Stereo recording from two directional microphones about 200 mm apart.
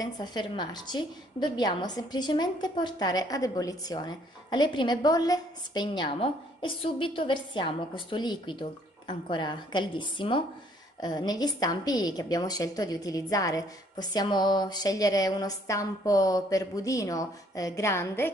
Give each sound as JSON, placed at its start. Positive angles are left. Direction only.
{"t": 0.0, "sound": "a woman's voice", "side_deg": 20}